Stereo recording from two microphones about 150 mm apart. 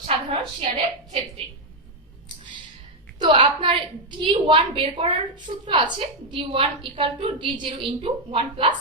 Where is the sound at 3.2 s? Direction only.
30° right (ahead or behind).